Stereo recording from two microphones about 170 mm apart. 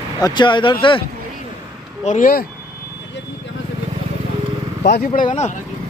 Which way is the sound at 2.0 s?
50° left (ahead or behind).